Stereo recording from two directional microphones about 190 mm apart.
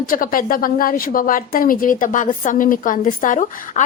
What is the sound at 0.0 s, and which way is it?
A woman's voice, 45° left (ahead or behind).